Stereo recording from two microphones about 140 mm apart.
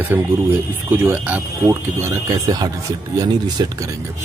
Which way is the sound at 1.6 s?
25° right (ahead or behind).